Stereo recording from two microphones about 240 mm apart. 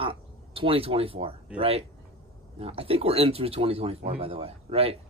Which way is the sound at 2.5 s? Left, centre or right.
Right.